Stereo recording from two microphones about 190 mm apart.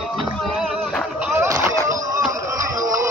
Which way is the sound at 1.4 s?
15° right (ahead or behind).